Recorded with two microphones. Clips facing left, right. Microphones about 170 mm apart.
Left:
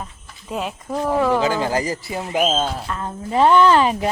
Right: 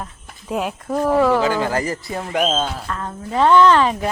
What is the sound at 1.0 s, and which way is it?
Speech, 15° left (ahead or behind).